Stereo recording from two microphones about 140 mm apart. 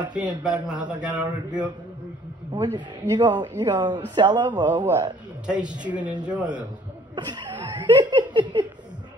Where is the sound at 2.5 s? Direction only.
30° right (ahead or behind).